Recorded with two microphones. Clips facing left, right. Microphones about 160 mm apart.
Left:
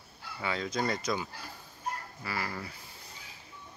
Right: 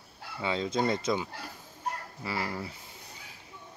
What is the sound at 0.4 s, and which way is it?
Speech, 25° right (ahead or behind).